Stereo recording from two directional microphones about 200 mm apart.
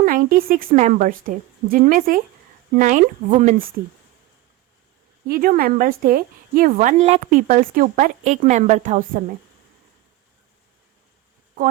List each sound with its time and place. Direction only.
0.0 s a woman's voice: 45° right (ahead or behind)
5.3 s a woman's voice: 45° right (ahead or behind)